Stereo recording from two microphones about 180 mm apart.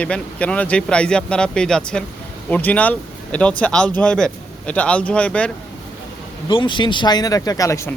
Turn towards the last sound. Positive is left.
turn(degrees=20)  # may be behind; listen again after turning